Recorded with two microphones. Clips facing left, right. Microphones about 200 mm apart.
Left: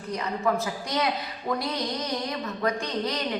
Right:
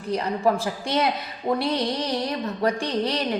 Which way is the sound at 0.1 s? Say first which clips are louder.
Right 4 dB; 30° right (ahead or behind).